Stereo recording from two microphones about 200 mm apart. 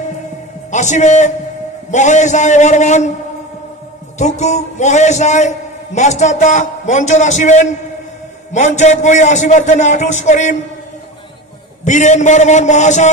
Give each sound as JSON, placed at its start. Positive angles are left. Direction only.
{"t": 0.7, "sound": "a man's voice", "side_deg": 35}
{"t": 4.2, "sound": "a man's voice", "side_deg": 35}
{"t": 11.8, "sound": "a man's voice", "side_deg": 35}